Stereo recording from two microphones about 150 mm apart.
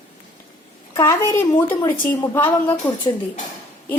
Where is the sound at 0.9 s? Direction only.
15° left (ahead or behind).